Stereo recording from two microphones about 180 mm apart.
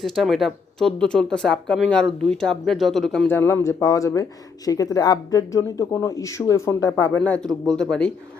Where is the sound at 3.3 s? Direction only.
10° left (ahead or behind).